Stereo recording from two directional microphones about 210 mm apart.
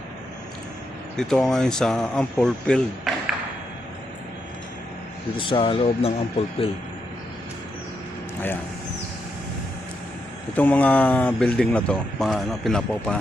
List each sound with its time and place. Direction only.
1.1 s speech: 5° left (ahead or behind)
5.4 s speech: 25° left (ahead or behind)
10.6 s speech: 5° left (ahead or behind)